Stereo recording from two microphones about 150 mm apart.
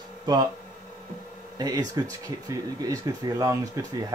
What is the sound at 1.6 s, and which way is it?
Speech, 25° right (ahead or behind).